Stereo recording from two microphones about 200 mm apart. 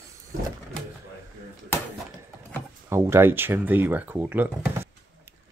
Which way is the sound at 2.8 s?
15° right (ahead or behind).